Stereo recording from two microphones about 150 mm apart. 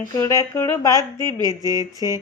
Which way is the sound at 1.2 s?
25° right (ahead or behind).